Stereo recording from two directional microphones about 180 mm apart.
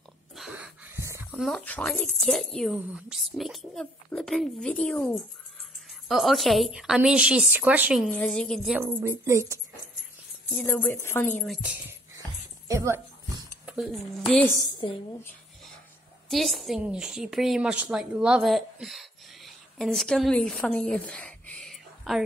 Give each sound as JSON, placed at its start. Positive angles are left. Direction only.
{"t": 0.4, "sound": "a sound", "side_deg": -10}
{"t": 1.4, "sound": "a woman's voice", "side_deg": 5}
{"t": 8.1, "sound": "a woman's voice", "side_deg": 5}
{"t": 8.7, "sound": "a woman's voice", "side_deg": -15}
{"t": 10.5, "sound": "speech", "side_deg": 10}
{"t": 11.3, "sound": "a woman's voice", "side_deg": 0}
{"t": 12.6, "sound": "speech", "side_deg": -15}
{"t": 16.3, "sound": "a woman's voice", "side_deg": 0}